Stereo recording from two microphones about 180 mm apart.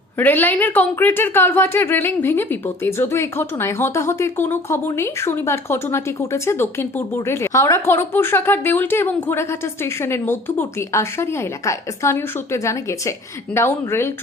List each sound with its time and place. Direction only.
0.2 s a woman's voice: 10° left (ahead or behind)